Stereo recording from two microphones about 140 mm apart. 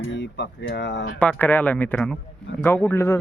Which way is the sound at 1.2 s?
10° left (ahead or behind).